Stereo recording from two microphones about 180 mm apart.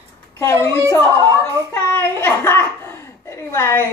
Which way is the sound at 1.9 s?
15° left (ahead or behind).